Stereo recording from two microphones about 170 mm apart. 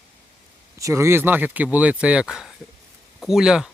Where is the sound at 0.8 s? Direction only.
15° right (ahead or behind).